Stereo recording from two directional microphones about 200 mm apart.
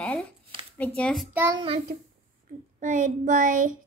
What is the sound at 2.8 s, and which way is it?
Child singing, 40° right (ahead or behind).